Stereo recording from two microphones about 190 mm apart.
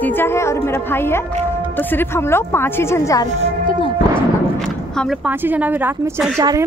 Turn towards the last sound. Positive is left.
turn(degrees=-20)  # may be behind; listen again after turning